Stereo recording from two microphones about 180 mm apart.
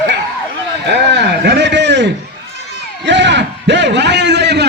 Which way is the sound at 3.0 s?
80° right.